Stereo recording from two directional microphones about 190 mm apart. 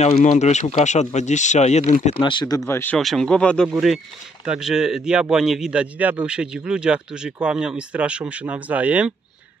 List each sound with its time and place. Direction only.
0.0 s speech: 35° left (ahead or behind)
2.1 s a man's voice: 25° left (ahead or behind); by 9.1 s 10° right (ahead or behind)